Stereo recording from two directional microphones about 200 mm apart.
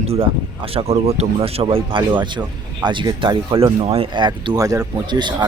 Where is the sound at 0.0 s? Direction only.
30° right (ahead or behind).